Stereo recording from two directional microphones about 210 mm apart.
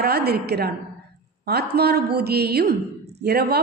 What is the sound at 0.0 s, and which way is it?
A woman's voice, 50° right (ahead or behind).